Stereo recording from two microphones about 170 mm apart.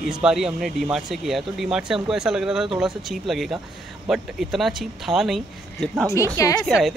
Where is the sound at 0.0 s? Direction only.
Centre (ahead or behind).